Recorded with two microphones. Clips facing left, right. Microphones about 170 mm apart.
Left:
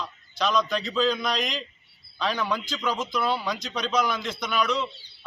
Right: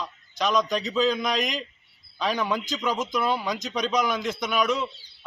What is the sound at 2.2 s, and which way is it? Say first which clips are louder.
A man's voice: right 1 dB; 15° right (ahead or behind).